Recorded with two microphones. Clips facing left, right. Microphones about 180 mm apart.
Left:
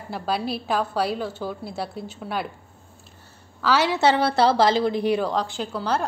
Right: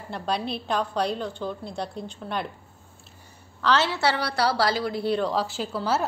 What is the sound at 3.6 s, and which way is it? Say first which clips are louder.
A woman's voice: left 3 dB; 10° left (ahead or behind).